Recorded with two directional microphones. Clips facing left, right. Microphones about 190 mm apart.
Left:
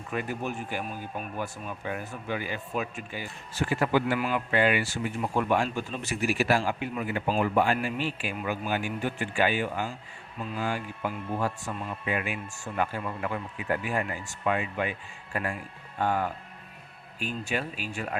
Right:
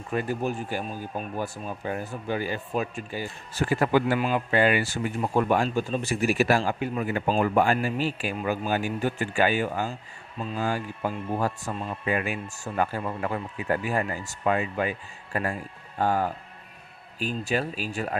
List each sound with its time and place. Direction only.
0.1 s speech: 35° right (ahead or behind)
4.2 s speech: 25° right (ahead or behind)
4.5 s speech: 40° right (ahead or behind)